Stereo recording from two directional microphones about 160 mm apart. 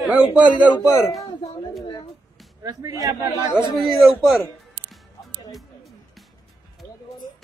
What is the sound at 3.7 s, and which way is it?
Speech, centre (ahead or behind).